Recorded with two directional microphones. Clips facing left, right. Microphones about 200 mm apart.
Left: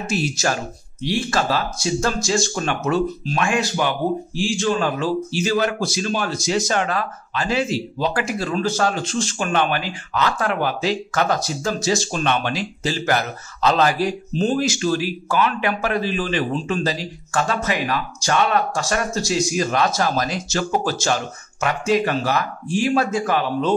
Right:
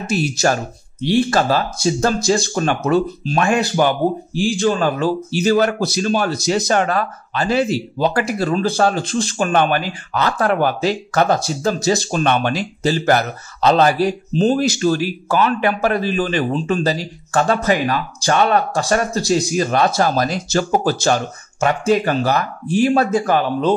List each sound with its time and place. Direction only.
0.0 s speech: 35° right (ahead or behind)